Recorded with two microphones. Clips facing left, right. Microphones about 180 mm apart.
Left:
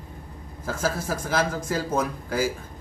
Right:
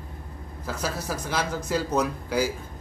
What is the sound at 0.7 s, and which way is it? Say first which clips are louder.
A man's voice: left 3 dB; 50° left (ahead or behind).